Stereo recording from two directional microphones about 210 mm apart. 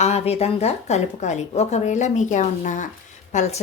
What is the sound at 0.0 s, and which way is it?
Speech, 30° left (ahead or behind).